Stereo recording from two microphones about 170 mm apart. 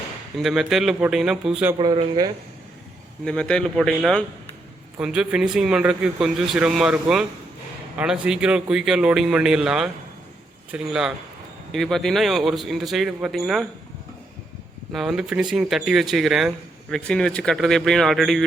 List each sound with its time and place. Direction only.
0.3 s a man's voice: centre (ahead or behind)
1.8 s speech: 25° right (ahead or behind)
3.2 s a man's voice: 5° left (ahead or behind)
14.9 s a man's voice: centre (ahead or behind)